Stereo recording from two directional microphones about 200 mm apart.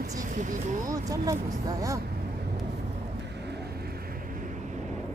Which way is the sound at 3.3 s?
55° right (ahead or behind).